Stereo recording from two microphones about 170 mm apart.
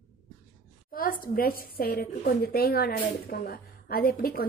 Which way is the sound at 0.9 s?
55° left (ahead or behind).